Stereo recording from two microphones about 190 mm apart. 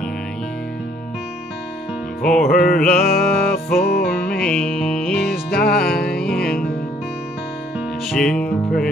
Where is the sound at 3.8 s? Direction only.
50° left (ahead or behind).